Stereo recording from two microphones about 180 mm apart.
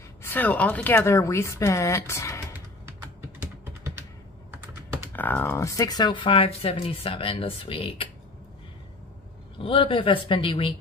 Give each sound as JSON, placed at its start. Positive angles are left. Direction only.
{"t": 0.2, "sound": "speech", "side_deg": 10}
{"t": 3.2, "sound": "typing", "side_deg": -15}
{"t": 5.1, "sound": "speech", "side_deg": 10}
{"t": 9.6, "sound": "speech", "side_deg": 30}